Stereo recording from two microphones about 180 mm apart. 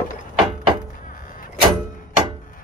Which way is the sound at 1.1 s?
50° left (ahead or behind).